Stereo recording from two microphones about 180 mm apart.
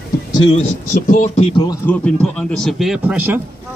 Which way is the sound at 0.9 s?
45° left (ahead or behind).